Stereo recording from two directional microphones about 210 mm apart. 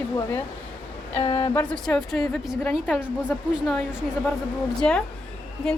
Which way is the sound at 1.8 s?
Centre (ahead or behind).